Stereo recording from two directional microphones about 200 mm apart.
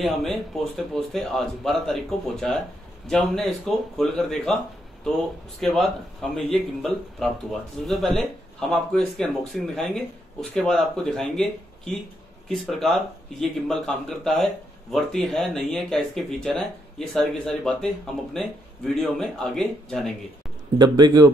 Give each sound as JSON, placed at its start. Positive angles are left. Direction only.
{"t": 0.0, "sound": "speech", "side_deg": 0}
{"t": 5.6, "sound": "speech", "side_deg": 0}
{"t": 20.7, "sound": "speech", "side_deg": -20}